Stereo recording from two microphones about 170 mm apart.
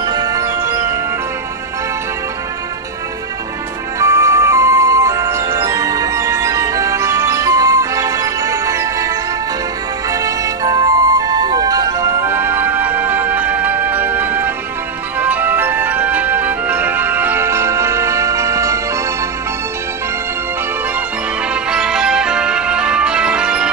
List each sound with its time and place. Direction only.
0.0 s music: 25° right (ahead or behind)
4.0 s music: 20° right (ahead or behind)
21.6 s music: 5° right (ahead or behind)